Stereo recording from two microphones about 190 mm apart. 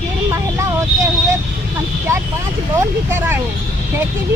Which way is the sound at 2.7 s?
10° right (ahead or behind).